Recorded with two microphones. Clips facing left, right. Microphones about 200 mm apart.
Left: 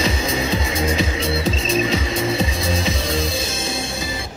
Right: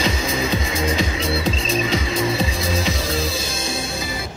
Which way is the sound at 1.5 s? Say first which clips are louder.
Left 2 dB; 30° right (ahead or behind).